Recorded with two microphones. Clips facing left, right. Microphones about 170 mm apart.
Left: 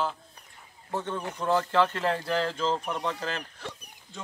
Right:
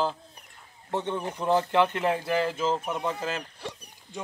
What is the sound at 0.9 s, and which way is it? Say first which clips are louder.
Speech: right 2 dB; 20° right (ahead or behind).